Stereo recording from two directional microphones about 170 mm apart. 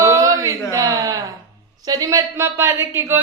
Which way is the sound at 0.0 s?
20° right (ahead or behind).